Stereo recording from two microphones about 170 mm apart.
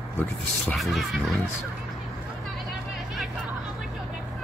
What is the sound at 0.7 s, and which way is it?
Speech, centre (ahead or behind).